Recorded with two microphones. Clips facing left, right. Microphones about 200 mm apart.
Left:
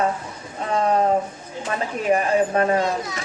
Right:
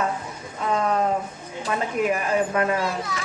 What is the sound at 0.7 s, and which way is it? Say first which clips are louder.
Speech: left 3 dB; 35° left (ahead or behind).